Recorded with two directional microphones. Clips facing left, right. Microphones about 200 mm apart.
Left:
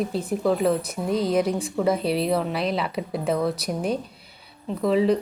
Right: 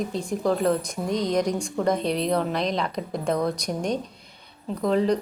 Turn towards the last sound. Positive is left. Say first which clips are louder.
# left 2 dB
turn(degrees=5)  # may be behind; listen again after turning